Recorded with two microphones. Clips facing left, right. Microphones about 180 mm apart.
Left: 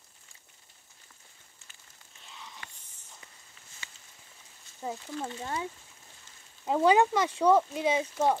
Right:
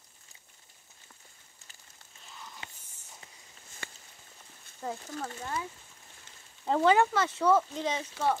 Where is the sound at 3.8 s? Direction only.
55° right (ahead or behind).